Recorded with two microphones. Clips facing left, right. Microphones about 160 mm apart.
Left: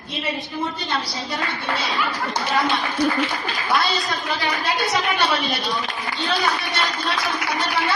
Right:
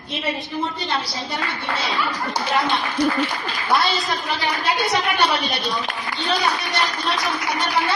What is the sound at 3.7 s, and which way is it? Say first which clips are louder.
A woman's voice: right 2 dB; centre (ahead or behind).